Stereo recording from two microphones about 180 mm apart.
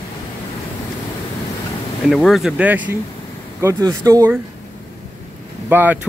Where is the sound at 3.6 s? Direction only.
20° right (ahead or behind).